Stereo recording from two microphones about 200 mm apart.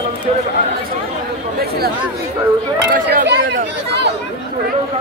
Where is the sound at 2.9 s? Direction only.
55° right (ahead or behind).